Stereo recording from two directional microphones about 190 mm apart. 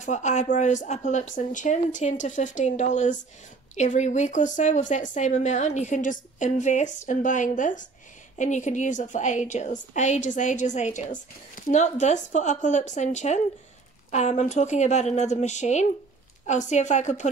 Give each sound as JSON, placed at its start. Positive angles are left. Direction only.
{"t": 0.0, "sound": "a woman's voice", "side_deg": 40}